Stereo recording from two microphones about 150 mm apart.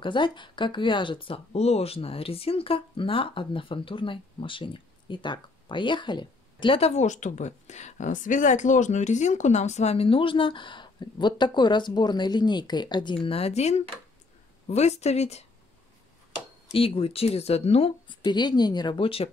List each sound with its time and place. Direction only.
0.0 s speech: 30° left (ahead or behind)
16.7 s speech: 40° left (ahead or behind)